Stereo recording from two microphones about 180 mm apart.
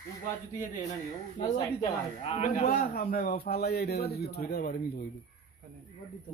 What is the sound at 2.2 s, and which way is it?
A man's voice, 40° left (ahead or behind).